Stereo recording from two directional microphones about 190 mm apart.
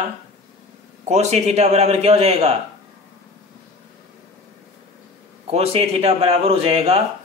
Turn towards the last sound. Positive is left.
turn(degrees=-30)  # may be behind; listen again after turning